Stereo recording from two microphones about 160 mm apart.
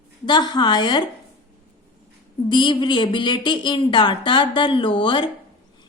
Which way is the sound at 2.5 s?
30° left (ahead or behind).